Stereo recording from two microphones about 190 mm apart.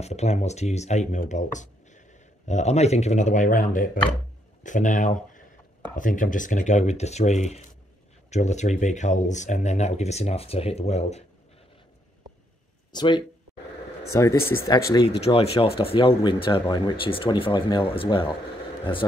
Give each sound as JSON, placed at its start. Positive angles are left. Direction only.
{"t": 0.0, "sound": "speech", "side_deg": 35}
{"t": 12.9, "sound": "speech", "side_deg": 25}
{"t": 15.0, "sound": "speech", "side_deg": 35}